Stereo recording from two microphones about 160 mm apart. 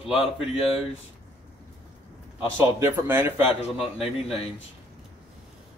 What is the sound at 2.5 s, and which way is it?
Speech, 15° right (ahead or behind).